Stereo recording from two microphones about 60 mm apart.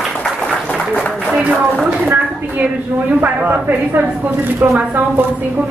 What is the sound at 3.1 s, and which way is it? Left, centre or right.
Speech, right.